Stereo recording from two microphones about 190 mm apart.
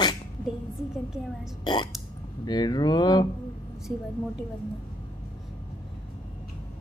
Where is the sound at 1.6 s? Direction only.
25° left (ahead or behind).